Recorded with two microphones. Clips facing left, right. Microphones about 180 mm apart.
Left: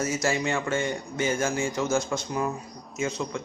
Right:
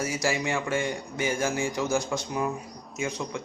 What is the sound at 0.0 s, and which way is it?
A man's voice, 15° right (ahead or behind).